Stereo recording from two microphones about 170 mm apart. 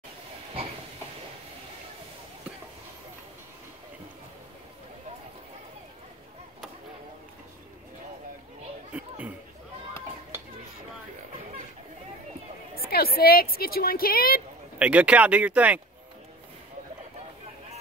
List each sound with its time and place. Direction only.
8.9 s a sound: 10° right (ahead or behind)
12.7 s a woman's voice: 65° left (ahead or behind)
14.8 s speech: 5° right (ahead or behind)